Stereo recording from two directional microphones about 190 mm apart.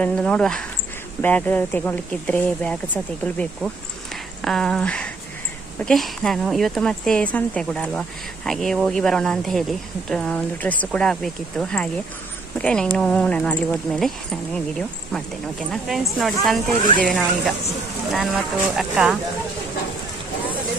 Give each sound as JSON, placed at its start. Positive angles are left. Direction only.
{"t": 0.0, "sound": "speech", "side_deg": 5}
{"t": 16.7, "sound": "speech", "side_deg": 25}
{"t": 17.0, "sound": "speech", "side_deg": 5}